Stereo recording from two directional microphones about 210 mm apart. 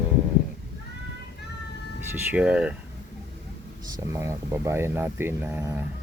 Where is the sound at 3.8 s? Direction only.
15° right (ahead or behind).